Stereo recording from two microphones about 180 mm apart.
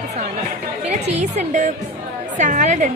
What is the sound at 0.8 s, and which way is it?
A woman's voice, 40° right (ahead or behind).